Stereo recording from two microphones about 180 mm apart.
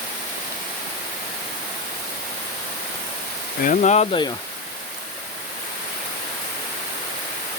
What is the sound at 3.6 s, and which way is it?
Speech, 45° left (ahead or behind).